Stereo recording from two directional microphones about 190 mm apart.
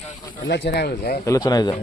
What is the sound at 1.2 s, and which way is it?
Speech, 20° left (ahead or behind).